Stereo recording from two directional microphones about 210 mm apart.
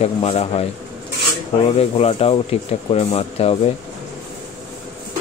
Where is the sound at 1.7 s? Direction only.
30° left (ahead or behind).